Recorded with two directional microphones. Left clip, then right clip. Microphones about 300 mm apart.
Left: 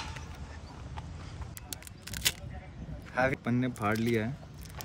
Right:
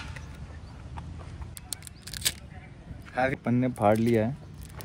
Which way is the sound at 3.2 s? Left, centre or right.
Centre.